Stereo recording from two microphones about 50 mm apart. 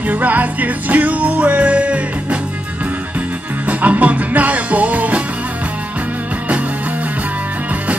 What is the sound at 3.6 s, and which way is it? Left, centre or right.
Music, right.